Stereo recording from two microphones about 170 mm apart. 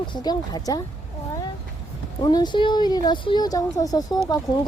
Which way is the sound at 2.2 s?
25° left (ahead or behind).